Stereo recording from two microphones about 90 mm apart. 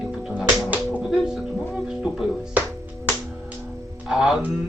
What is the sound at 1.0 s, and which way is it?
Music, 5° right (ahead or behind).